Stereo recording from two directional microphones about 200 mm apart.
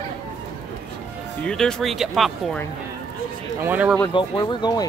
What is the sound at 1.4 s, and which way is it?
Speech, 5° left (ahead or behind).